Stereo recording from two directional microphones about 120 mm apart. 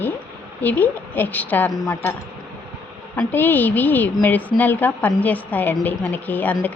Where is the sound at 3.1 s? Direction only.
15° left (ahead or behind).